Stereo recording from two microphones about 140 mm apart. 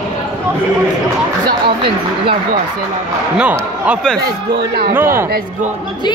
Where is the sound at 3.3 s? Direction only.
10° right (ahead or behind).